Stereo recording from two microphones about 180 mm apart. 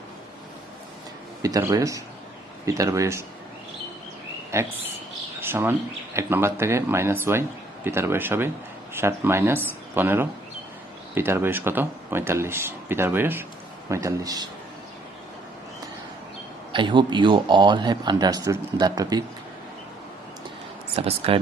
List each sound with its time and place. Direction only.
1.4 s speech: 20° right (ahead or behind)
4.5 s speech: 15° right (ahead or behind)
5.4 s a sound: 15° right (ahead or behind)
6.1 s speech: 15° right (ahead or behind)
16.7 s speech: 25° right (ahead or behind)
20.9 s speech: 35° right (ahead or behind)